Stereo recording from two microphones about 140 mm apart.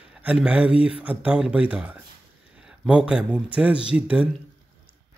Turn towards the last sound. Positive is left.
turn(degrees=-10)  # may be behind; listen again after turning